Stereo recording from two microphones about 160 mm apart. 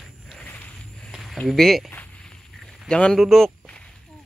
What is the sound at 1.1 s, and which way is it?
A man's voice, centre (ahead or behind).